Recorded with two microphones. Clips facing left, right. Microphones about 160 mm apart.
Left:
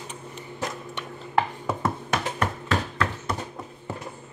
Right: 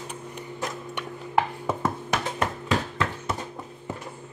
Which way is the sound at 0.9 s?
10° right (ahead or behind).